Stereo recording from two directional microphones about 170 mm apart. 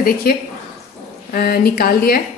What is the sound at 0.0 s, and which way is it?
A woman's voice, 60° left (ahead or behind).